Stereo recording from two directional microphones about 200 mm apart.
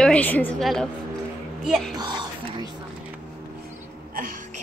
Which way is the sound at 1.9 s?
20° right (ahead or behind).